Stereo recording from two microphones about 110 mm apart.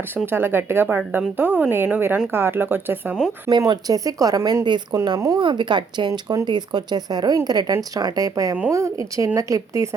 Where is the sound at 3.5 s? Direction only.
40° right (ahead or behind).